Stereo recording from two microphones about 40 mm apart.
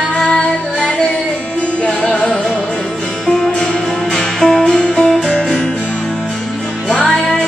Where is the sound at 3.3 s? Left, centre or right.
Centre.